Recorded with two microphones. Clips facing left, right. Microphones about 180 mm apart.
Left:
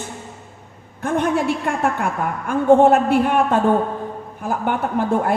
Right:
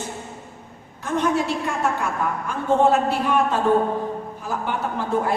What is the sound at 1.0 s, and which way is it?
A woman's voice, 55° left (ahead or behind).